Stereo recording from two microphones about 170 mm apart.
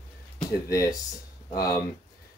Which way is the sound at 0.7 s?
20° left (ahead or behind).